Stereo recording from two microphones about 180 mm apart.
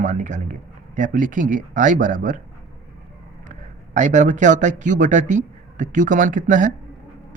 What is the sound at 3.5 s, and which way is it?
Speech, 45° right (ahead or behind).